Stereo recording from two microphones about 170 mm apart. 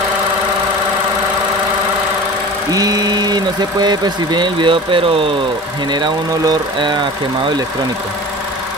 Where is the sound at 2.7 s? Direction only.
20° right (ahead or behind).